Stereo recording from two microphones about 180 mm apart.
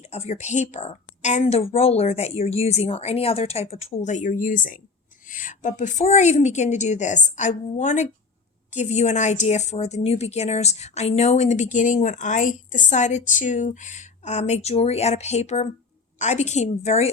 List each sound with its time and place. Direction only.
0.0 s speech: 35° left (ahead or behind)